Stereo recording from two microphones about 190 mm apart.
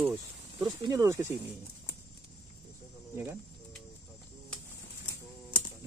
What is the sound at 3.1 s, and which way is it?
Speech, 10° right (ahead or behind).